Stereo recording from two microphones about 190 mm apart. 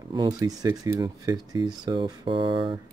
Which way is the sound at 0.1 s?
20° right (ahead or behind).